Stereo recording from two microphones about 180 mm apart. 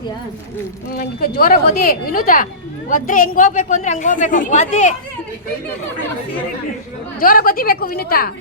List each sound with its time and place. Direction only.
0.9 s a woman's voice: 55° left (ahead or behind)
7.2 s a woman's voice: 55° left (ahead or behind)